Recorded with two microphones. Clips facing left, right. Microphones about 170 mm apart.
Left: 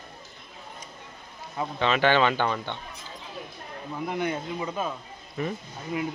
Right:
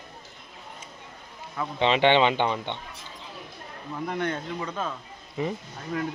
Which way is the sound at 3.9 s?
5° left (ahead or behind).